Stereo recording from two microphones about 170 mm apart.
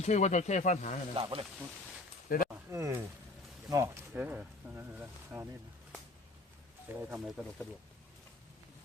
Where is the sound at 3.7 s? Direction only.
15° right (ahead or behind).